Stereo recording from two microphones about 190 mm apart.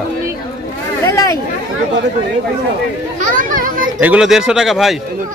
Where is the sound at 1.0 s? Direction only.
20° left (ahead or behind).